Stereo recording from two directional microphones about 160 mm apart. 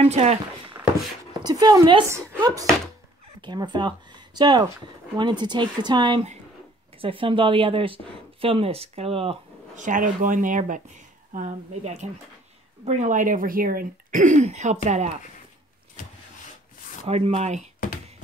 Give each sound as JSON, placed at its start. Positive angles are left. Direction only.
{"t": 0.0, "sound": "a sound", "side_deg": -40}
{"t": 1.4, "sound": "speech", "side_deg": -25}
{"t": 9.8, "sound": "speech", "side_deg": -55}
{"t": 17.1, "sound": "speech", "side_deg": -40}